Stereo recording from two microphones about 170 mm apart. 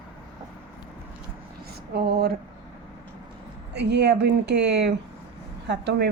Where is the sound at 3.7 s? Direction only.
80° right.